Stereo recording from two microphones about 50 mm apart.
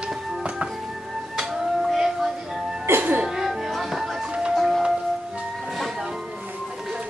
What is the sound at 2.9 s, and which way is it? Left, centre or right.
Music, right.